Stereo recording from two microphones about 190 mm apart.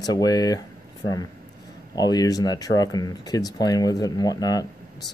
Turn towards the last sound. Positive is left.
turn(degrees=20)  # may be behind; listen again after turning